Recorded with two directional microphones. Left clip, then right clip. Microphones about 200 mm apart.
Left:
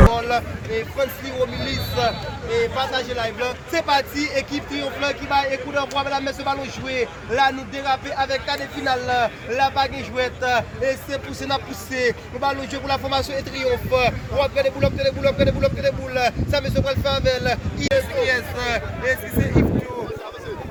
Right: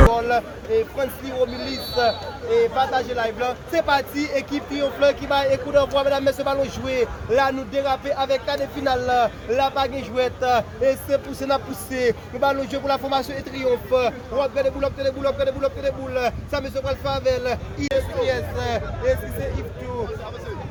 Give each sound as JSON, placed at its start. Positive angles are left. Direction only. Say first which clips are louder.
{"t": 0.1, "sound": "speech", "louder": "right 1 dB", "side_deg": -50}
{"t": 17.9, "sound": "speech", "louder": "left 2 dB", "side_deg": -25}